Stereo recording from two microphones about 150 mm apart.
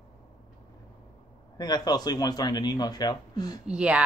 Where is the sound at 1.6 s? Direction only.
25° left (ahead or behind).